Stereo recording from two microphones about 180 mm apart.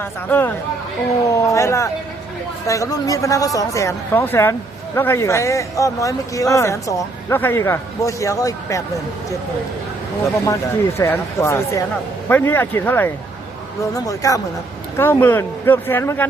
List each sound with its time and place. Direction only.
0.0 s speech: 10° left (ahead or behind)
10.4 s speech: 15° left (ahead or behind)